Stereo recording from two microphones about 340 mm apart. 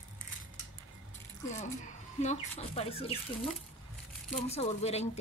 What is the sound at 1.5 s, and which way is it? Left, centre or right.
A woman's voice, left.